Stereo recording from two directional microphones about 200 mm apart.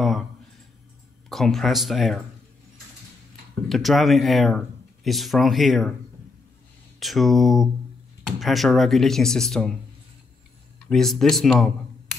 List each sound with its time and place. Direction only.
1.3 s speech: centre (ahead or behind)
3.6 s speech: centre (ahead or behind)
7.0 s speech: centre (ahead or behind)
10.9 s speech: centre (ahead or behind)